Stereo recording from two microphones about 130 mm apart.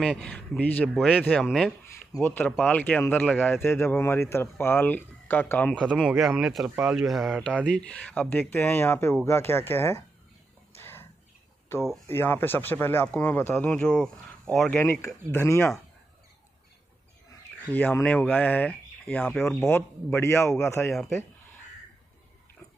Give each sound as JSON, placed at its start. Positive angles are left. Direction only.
{"t": 0.0, "sound": "speech", "side_deg": 10}
{"t": 2.1, "sound": "a man's voice", "side_deg": 25}
{"t": 2.6, "sound": "speech", "side_deg": 15}
{"t": 5.9, "sound": "speech", "side_deg": 0}
{"t": 10.8, "sound": "a sound", "side_deg": 15}
{"t": 12.1, "sound": "speech", "side_deg": 15}
{"t": 14.8, "sound": "a man's voice", "side_deg": 20}
{"t": 17.6, "sound": "a man's voice", "side_deg": 15}